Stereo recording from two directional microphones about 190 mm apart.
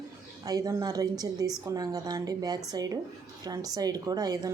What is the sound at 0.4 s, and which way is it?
Speech, 20° right (ahead or behind).